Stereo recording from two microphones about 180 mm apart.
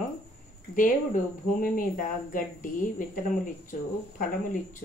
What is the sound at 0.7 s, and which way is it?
Speech, 45° left (ahead or behind).